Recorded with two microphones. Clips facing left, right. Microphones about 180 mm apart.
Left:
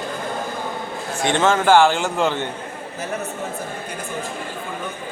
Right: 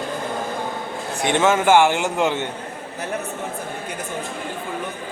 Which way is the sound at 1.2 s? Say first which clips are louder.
Even; 15° right (ahead or behind).